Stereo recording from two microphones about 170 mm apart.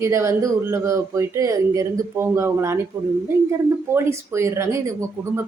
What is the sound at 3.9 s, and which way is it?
Speech, 15° right (ahead or behind).